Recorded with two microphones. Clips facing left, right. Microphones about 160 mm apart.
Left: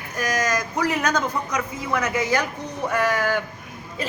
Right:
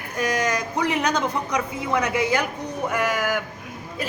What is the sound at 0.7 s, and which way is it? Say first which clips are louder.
Speech: even; 15° right (ahead or behind).